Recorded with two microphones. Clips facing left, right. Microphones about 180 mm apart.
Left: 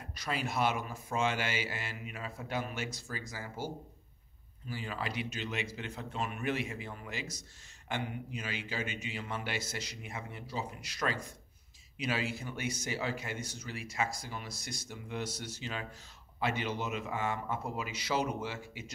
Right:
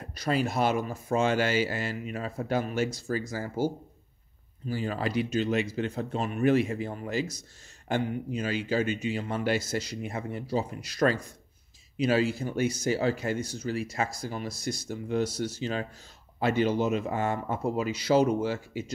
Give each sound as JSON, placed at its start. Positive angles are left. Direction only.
{"t": 0.1, "sound": "speech", "side_deg": -35}